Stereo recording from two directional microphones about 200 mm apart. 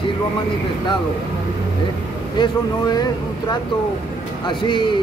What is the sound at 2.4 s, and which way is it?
Speech, 20° left (ahead or behind).